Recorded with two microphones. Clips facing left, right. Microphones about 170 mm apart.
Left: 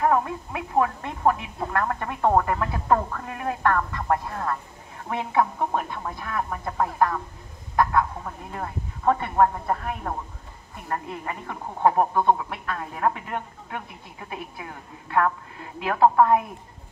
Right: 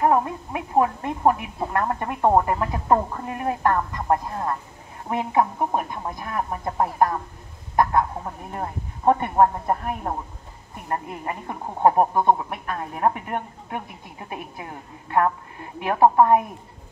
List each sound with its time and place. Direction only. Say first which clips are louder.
0.0 s speech: right 2 dB; 25° right (ahead or behind)
11.2 s a woman's voice: right 2 dB; 20° right (ahead or behind)
14.6 s speech: right 2 dB; 30° right (ahead or behind)